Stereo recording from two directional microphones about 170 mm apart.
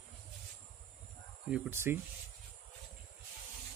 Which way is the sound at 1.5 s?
15° right (ahead or behind).